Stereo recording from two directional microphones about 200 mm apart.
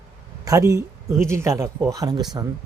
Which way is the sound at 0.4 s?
15° right (ahead or behind).